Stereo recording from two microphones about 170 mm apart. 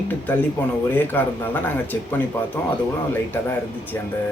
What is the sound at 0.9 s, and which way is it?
Speech, 10° left (ahead or behind).